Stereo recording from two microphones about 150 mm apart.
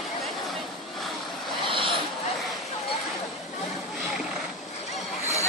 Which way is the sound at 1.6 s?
35° right (ahead or behind).